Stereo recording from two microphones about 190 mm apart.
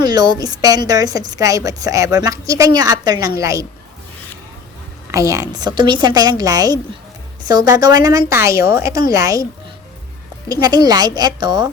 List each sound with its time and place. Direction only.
0.0 s a woman's voice: 20° right (ahead or behind)
5.1 s a woman's voice: 15° right (ahead or behind)
10.5 s a woman's voice: 20° right (ahead or behind)